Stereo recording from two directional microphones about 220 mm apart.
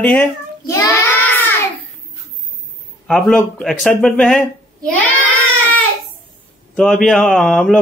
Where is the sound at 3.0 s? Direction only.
5° left (ahead or behind).